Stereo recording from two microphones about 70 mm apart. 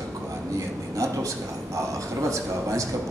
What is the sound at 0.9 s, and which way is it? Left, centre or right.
Speech, right.